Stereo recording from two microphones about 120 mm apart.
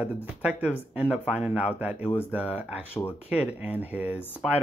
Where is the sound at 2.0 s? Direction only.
20° left (ahead or behind).